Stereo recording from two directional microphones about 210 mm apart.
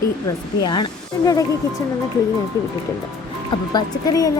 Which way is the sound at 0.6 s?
20° left (ahead or behind).